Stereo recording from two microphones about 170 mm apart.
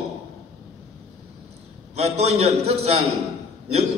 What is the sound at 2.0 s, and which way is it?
A man's voice, 40° right (ahead or behind).